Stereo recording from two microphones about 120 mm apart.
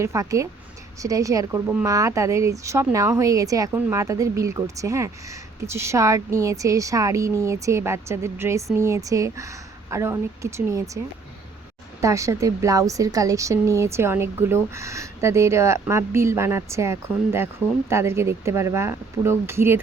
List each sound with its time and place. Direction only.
0.0 s a woman's voice: 25° right (ahead or behind)